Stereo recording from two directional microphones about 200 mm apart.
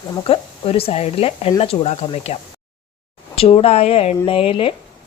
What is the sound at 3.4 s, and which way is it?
Speech, 30° left (ahead or behind).